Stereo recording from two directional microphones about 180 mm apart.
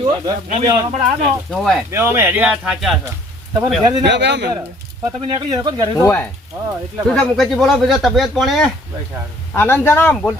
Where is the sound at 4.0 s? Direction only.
70° right (ahead or behind).